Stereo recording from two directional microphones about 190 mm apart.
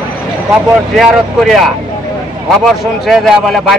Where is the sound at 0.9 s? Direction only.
Centre (ahead or behind).